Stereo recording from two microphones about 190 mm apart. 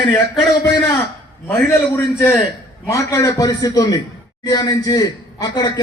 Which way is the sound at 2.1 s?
10° left (ahead or behind).